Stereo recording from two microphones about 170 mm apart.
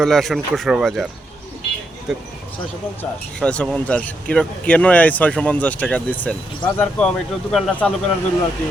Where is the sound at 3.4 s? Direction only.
5° left (ahead or behind).